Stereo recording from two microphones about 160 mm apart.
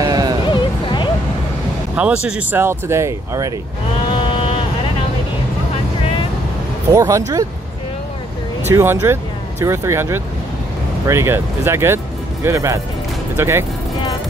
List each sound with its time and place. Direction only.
0.0 s music: 25° right (ahead or behind)
0.5 s music: 30° left (ahead or behind)
2.0 s speech: 10° right (ahead or behind)
4.1 s vehicle: 30° left (ahead or behind)
6.9 s speech: 20° right (ahead or behind)
8.6 s speech: 15° right (ahead or behind)